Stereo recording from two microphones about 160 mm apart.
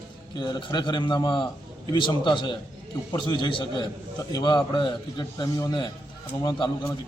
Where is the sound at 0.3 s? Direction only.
25° left (ahead or behind).